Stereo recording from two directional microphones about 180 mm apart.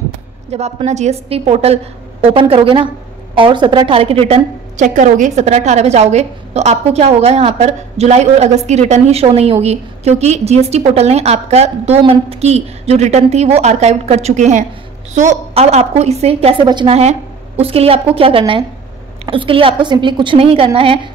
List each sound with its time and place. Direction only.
0.5 s a woman's voice: 35° right (ahead or behind)